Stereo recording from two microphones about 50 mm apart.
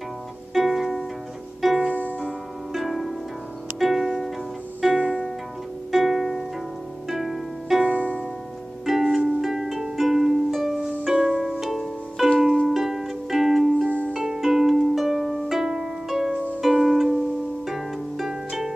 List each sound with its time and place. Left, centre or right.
0.6 s music: centre
2.7 s harp: centre
3.8 s music: centre
5.9 s harp: centre
7.9 s harp: left
8.8 s music: centre
11.1 s harp: centre
12.6 s music: centre
14.1 s harp: centre
16.6 s music: centre
17.6 s harp: centre